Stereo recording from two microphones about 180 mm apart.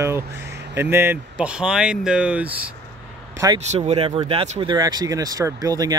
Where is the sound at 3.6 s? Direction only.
35° right (ahead or behind).